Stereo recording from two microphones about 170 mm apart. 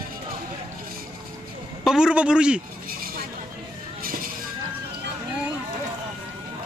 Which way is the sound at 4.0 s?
55° right (ahead or behind).